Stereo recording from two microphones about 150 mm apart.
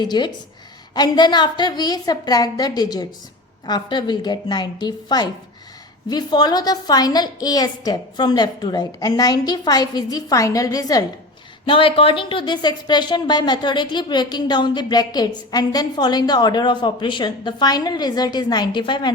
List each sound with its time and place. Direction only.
0.0 s a woman's voice: 30° left (ahead or behind)
11.6 s a woman's voice: 35° left (ahead or behind)